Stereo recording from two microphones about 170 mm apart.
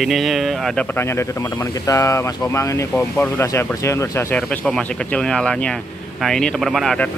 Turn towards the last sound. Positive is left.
turn(degrees=0)  # may be behind; listen again after turning